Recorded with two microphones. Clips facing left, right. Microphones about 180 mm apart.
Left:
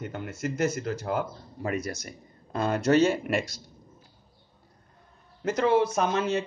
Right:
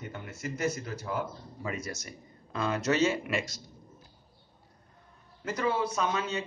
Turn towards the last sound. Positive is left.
turn(degrees=80)